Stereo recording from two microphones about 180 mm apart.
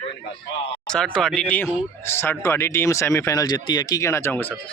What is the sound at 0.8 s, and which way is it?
Speech, 5° left (ahead or behind).